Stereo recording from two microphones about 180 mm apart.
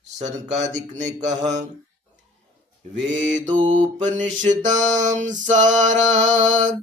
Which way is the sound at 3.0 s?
45° right (ahead or behind).